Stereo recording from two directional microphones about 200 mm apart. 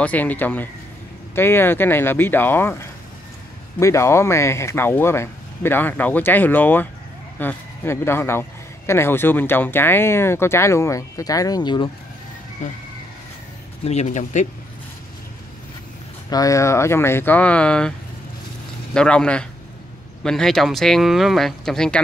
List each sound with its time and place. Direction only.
0.0 s a man's voice: 10° left (ahead or behind)
13.8 s speech: 35° left (ahead or behind)
16.3 s a man's voice: 15° left (ahead or behind)
18.9 s speech: 5° left (ahead or behind)